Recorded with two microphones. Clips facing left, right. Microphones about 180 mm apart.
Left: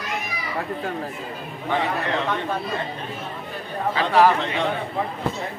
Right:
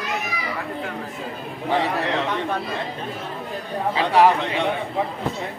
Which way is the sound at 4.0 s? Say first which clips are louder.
Right 1 dB; 20° right (ahead or behind).